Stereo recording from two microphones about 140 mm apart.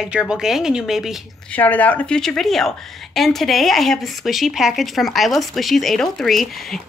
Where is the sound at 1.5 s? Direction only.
10° left (ahead or behind).